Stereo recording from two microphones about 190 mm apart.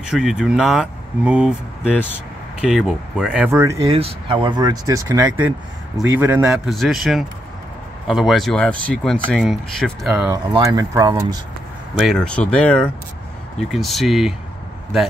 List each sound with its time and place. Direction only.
0.1 s speech: 5° right (ahead or behind)
3.9 s speech: 25° right (ahead or behind); by 10.3 s 5° right (ahead or behind)
10.3 s speech: 20° right (ahead or behind)
11.9 s speech: centre (ahead or behind)